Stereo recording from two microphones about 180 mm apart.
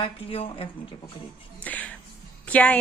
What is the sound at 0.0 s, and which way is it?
Speech, 30° left (ahead or behind).